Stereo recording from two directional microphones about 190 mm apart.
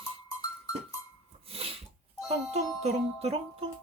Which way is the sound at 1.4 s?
30° right (ahead or behind).